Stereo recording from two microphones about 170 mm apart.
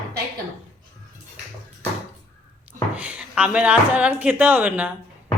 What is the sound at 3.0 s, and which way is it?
A woman's voice, 10° right (ahead or behind).